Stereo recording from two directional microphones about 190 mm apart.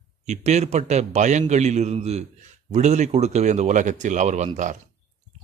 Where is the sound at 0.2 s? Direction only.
35° right (ahead or behind).